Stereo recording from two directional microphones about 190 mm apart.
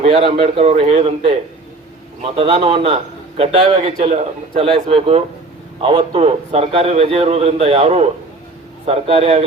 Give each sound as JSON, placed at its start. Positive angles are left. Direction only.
{"t": 0.0, "sound": "a man's voice", "side_deg": -30}
{"t": 2.3, "sound": "a man's voice", "side_deg": -30}